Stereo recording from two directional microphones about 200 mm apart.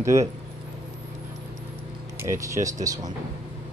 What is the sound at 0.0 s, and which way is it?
Speech, 15° right (ahead or behind).